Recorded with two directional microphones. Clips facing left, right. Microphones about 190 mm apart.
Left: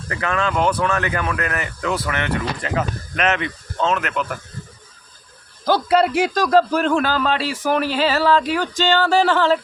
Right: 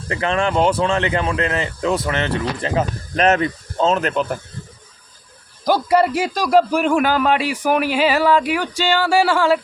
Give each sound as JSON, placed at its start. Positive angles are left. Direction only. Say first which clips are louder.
{"t": 0.1, "sound": "speech", "louder": "right 3 dB", "side_deg": -25}
{"t": 5.6, "sound": "a man's voice", "louder": "right 1 dB", "side_deg": -10}